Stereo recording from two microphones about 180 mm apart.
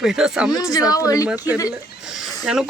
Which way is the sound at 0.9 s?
20° left (ahead or behind).